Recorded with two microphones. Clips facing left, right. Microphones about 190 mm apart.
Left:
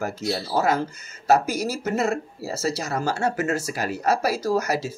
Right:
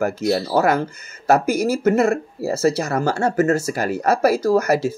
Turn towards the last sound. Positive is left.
turn(degrees=-55)  # may be behind; listen again after turning